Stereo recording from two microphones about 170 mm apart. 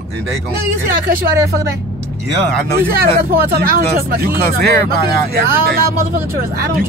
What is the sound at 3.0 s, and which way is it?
Speech, 65° right (ahead or behind).